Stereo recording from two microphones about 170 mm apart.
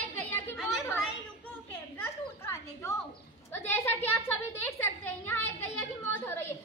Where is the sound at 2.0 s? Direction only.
15° left (ahead or behind).